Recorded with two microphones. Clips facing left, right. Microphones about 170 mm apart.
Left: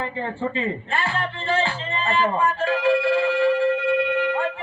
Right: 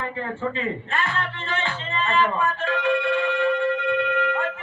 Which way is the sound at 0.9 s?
30° left (ahead or behind).